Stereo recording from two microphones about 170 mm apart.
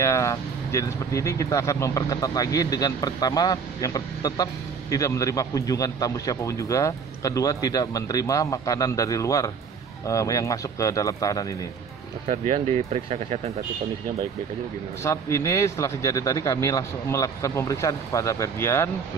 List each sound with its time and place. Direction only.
0.0 s speech: 15° left (ahead or behind)
12.3 s speech: 40° right (ahead or behind)
15.0 s speech: 15° left (ahead or behind)